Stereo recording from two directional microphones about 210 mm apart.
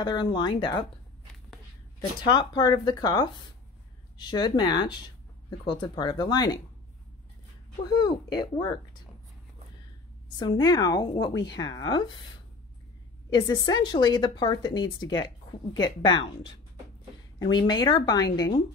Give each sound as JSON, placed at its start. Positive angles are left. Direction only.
{"t": 0.0, "sound": "a woman's voice", "side_deg": 20}
{"t": 2.0, "sound": "a woman's voice", "side_deg": 20}
{"t": 7.9, "sound": "a woman's voice", "side_deg": 20}
{"t": 10.4, "sound": "a woman's voice", "side_deg": 20}
{"t": 13.3, "sound": "a woman's voice", "side_deg": 20}